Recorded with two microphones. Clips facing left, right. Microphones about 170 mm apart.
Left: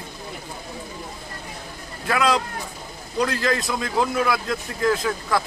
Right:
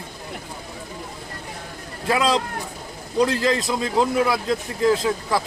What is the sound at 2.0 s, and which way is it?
A man's voice, 30° right (ahead or behind).